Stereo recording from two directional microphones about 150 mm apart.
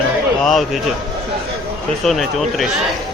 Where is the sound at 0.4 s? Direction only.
Centre (ahead or behind).